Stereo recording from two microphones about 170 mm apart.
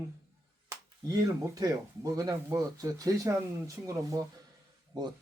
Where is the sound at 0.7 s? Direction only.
20° right (ahead or behind).